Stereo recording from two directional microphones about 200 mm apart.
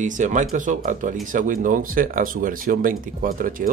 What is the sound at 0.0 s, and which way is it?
Speech, 40° right (ahead or behind).